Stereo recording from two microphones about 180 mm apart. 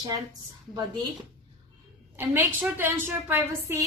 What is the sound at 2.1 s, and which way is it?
A woman's voice, 10° right (ahead or behind).